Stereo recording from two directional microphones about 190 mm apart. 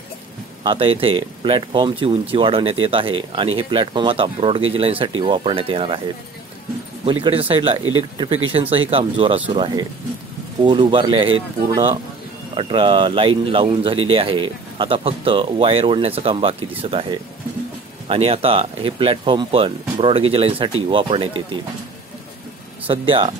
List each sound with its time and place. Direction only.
0.7 s speech: 30° right (ahead or behind)
22.8 s speech: 30° right (ahead or behind)